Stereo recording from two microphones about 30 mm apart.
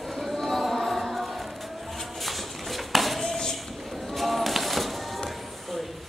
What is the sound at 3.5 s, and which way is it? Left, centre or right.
Music, centre.